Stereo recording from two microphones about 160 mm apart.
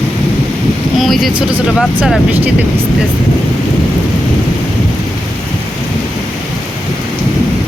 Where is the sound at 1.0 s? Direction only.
Centre (ahead or behind).